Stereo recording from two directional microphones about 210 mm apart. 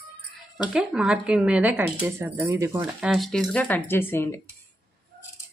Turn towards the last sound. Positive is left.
turn(degrees=10)  # may be behind; listen again after turning